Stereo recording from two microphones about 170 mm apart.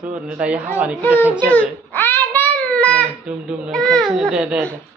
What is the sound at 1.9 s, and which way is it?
Child singing, 10° left (ahead or behind).